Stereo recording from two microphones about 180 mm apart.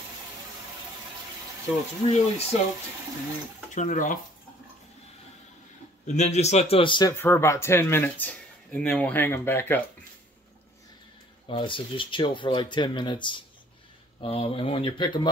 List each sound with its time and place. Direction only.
2.0 s speech: 35° left (ahead or behind)
3.7 s speech: 45° left (ahead or behind)
6.0 s speech: 40° left (ahead or behind); by 9.8 s 10° left (ahead or behind)
11.4 s speech: 30° left (ahead or behind)